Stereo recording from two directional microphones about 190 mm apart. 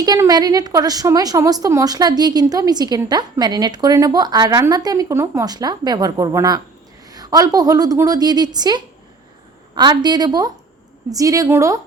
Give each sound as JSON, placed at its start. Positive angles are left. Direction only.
{"t": 0.0, "sound": "a woman's voice", "side_deg": -20}